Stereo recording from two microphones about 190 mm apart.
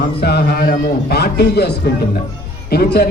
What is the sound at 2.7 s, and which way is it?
Speech, 55° left (ahead or behind).